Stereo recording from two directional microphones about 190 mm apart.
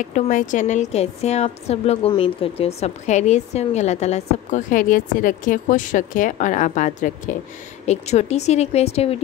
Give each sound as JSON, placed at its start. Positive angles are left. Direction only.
{"t": 0.1, "sound": "a woman's voice", "side_deg": 40}